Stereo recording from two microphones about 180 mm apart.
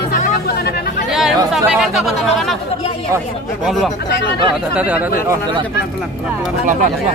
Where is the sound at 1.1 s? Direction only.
5° right (ahead or behind).